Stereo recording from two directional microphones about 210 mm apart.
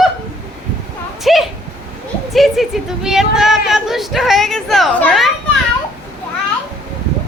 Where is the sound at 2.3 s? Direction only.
Centre (ahead or behind).